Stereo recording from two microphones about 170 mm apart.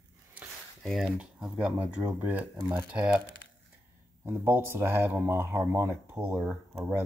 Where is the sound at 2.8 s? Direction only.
10° right (ahead or behind).